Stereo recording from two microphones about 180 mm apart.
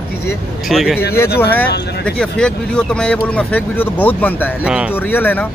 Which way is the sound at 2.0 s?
5° left (ahead or behind).